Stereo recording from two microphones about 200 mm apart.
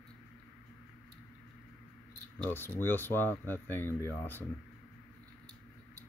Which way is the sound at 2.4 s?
10° left (ahead or behind).